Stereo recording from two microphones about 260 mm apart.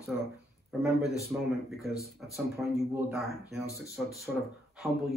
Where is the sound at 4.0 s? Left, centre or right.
Centre.